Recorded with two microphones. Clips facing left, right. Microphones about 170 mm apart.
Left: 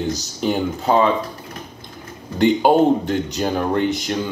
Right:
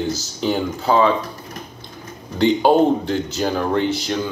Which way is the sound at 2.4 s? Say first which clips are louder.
Even; 15° left (ahead or behind).